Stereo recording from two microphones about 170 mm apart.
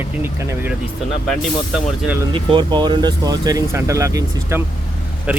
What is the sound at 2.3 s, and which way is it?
Speech, 30° right (ahead or behind).